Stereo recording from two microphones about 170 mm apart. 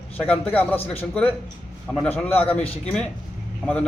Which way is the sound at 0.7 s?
35° left (ahead or behind).